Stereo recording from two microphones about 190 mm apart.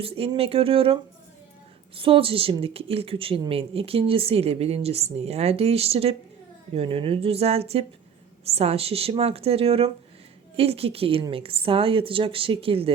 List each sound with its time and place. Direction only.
0.0 s a woman's voice: 30° right (ahead or behind)
2.0 s a woman's voice: 30° right (ahead or behind)